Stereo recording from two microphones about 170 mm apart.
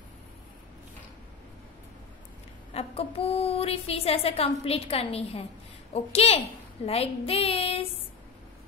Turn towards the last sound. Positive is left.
turn(degrees=35)  # may be behind; listen again after turning